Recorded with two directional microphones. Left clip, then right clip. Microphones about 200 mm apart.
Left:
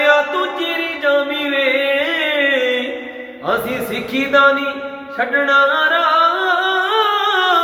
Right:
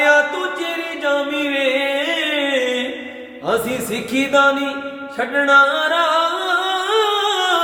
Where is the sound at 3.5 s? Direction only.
20° right (ahead or behind).